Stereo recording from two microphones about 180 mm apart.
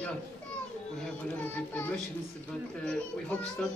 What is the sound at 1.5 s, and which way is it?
A woman's voice, 10° left (ahead or behind).